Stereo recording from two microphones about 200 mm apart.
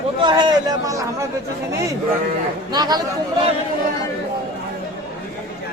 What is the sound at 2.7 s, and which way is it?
Speech, 20° right (ahead or behind).